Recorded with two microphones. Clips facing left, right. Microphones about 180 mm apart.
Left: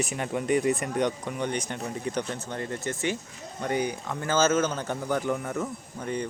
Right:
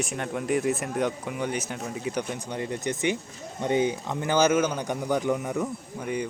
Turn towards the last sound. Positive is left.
turn(degrees=-10)  # may be behind; listen again after turning